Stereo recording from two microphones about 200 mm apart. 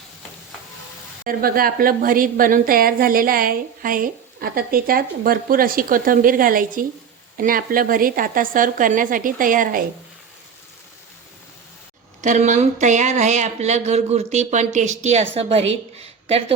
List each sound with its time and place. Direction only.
1.2 s a woman's voice: 45° right (ahead or behind)
12.2 s a woman's voice: 35° right (ahead or behind)
16.0 s a sound: 30° right (ahead or behind)